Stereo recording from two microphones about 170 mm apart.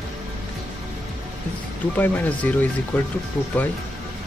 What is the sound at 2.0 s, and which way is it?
Speech, 10° left (ahead or behind).